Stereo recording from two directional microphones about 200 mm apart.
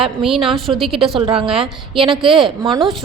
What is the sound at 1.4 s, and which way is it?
A woman's voice, 30° right (ahead or behind).